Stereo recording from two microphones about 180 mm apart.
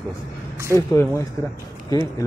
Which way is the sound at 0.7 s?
15° left (ahead or behind).